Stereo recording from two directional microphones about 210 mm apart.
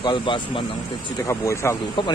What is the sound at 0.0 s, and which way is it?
Speech, 25° left (ahead or behind).